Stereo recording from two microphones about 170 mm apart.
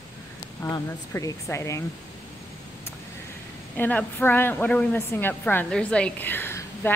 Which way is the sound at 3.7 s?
10° left (ahead or behind).